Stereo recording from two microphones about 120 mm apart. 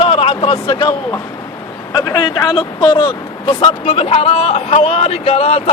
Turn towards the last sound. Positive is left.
turn(degrees=55)  # may be behind; listen again after turning